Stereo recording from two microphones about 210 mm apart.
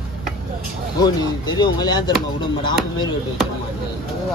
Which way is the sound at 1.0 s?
20° left (ahead or behind).